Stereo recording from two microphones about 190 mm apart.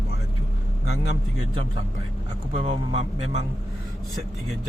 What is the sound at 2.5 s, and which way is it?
Speech, 30° right (ahead or behind).